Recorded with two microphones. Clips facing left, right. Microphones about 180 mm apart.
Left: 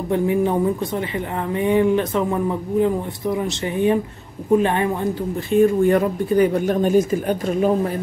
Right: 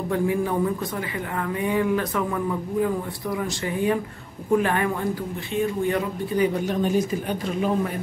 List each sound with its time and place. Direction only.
0.1 s a woman's voice: 20° left (ahead or behind)
5.5 s speech: 50° left (ahead or behind)